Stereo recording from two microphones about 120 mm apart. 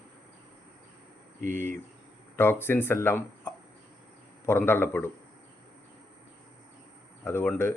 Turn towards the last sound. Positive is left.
turn(degrees=20)  # may be behind; listen again after turning